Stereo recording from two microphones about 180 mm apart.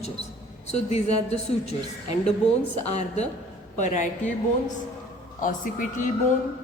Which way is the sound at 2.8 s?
35° left (ahead or behind).